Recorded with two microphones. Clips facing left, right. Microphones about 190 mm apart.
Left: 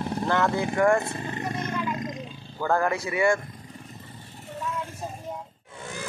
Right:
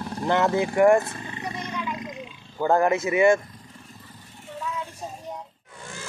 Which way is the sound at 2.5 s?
20° right (ahead or behind).